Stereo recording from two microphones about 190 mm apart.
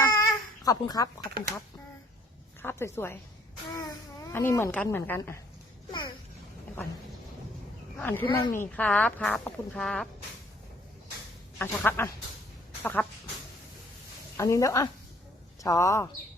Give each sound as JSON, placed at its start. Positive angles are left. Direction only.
{"t": 0.0, "sound": "baby cry", "side_deg": 15}
{"t": 2.6, "sound": "a woman's voice", "side_deg": 10}
{"t": 7.9, "sound": "speech", "side_deg": 10}
{"t": 8.3, "sound": "speech", "side_deg": 25}
{"t": 8.6, "sound": "speech", "side_deg": 5}
{"t": 11.5, "sound": "speech", "side_deg": 10}
{"t": 14.3, "sound": "speech", "side_deg": 15}